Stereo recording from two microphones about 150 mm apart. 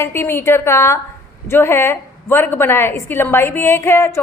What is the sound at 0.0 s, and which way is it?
A woman's voice, 15° left (ahead or behind).